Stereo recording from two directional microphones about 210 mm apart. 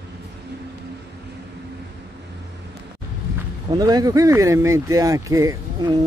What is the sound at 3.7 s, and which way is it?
Speech, 20° right (ahead or behind).